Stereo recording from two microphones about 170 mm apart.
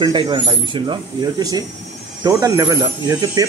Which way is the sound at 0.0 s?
30° right (ahead or behind).